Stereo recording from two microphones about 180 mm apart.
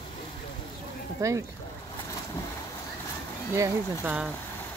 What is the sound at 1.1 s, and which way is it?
Speech, 15° right (ahead or behind).